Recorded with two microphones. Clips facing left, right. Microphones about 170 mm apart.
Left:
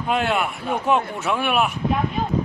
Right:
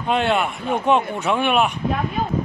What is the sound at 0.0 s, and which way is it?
Speech, 5° left (ahead or behind).